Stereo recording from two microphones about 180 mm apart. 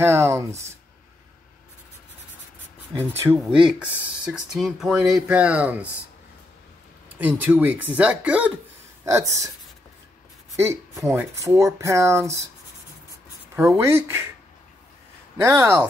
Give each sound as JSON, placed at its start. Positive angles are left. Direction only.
{"t": 0.0, "sound": "speech", "side_deg": -15}
{"t": 0.5, "sound": "speech", "side_deg": -40}
{"t": 3.0, "sound": "speech", "side_deg": -15}
{"t": 7.2, "sound": "speech", "side_deg": -10}
{"t": 10.6, "sound": "speech", "side_deg": -15}
{"t": 13.6, "sound": "speech", "side_deg": -15}
{"t": 15.4, "sound": "speech", "side_deg": -15}